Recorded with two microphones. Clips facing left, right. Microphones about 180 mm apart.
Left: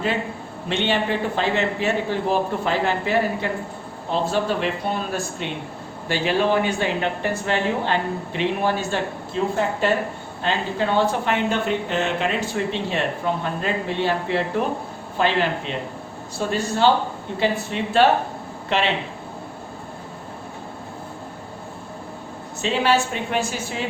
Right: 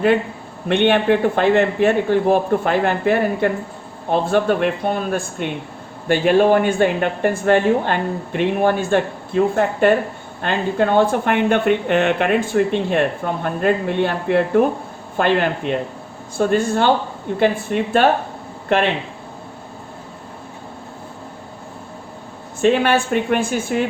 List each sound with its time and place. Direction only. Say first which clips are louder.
0.7 s speech: right 7 dB; 55° right (ahead or behind)
22.6 s speech: right 5 dB; 55° right (ahead or behind)